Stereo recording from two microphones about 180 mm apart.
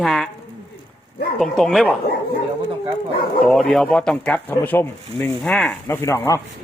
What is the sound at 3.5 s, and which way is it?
Speech, centre (ahead or behind).